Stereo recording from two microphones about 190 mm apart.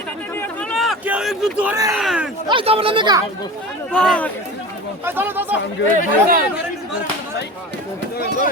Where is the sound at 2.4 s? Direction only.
30° right (ahead or behind).